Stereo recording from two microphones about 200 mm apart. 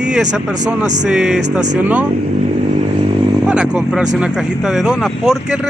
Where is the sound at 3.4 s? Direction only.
5° right (ahead or behind).